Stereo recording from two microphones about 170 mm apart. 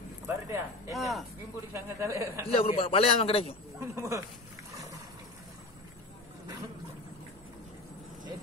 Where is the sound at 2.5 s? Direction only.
35° left (ahead or behind).